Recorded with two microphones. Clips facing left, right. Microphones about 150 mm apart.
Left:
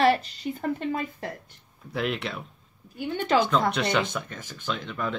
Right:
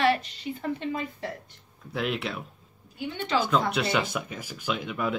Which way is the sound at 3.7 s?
5° right (ahead or behind).